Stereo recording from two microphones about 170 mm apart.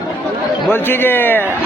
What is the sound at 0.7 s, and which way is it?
Speech, 10° left (ahead or behind).